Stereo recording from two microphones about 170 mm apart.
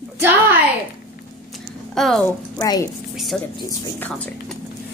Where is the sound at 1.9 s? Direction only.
Centre (ahead or behind).